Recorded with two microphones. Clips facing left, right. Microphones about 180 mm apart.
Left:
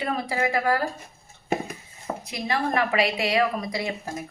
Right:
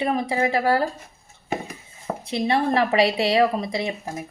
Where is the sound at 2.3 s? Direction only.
30° right (ahead or behind).